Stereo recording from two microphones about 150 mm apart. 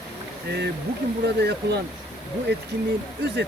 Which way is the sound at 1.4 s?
90° right.